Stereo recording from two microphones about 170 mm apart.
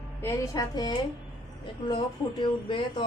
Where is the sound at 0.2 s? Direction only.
15° left (ahead or behind).